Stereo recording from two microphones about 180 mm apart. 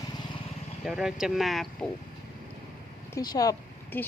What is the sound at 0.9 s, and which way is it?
Speech, 5° right (ahead or behind).